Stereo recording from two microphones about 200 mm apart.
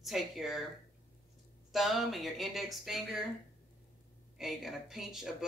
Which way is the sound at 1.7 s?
Centre (ahead or behind).